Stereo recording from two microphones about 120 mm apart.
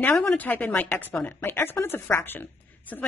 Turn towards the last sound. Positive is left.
turn(degrees=15)  # may be behind; listen again after turning